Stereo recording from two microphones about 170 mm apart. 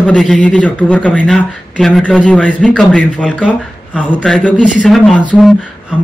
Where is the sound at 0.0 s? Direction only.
5° left (ahead or behind).